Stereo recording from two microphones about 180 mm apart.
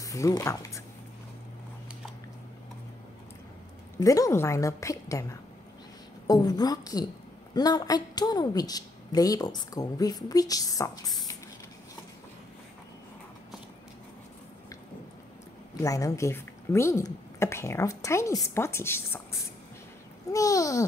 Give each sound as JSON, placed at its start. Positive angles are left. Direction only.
{"t": 0.0, "sound": "speech", "side_deg": 20}
{"t": 4.0, "sound": "a woman's voice", "side_deg": 20}
{"t": 15.7, "sound": "a woman's voice", "side_deg": 20}
{"t": 20.3, "sound": "a woman's voice", "side_deg": 20}